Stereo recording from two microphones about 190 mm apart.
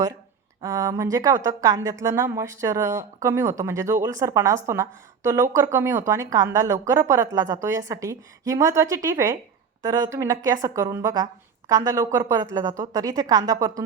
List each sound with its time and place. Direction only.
0.6 s a woman's voice: 20° right (ahead or behind)